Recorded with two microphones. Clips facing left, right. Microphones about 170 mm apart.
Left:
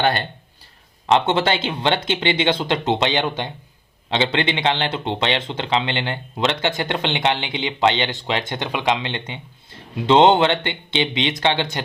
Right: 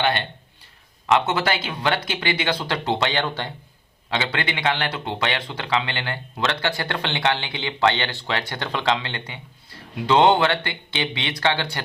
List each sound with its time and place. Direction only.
0.0 s speech: 40° left (ahead or behind)
1.0 s speech: 30° left (ahead or behind)